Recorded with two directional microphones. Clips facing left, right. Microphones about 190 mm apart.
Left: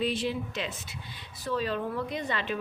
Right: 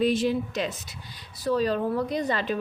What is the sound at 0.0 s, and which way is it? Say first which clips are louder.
A woman's voice: right 6 dB; 45° right (ahead or behind).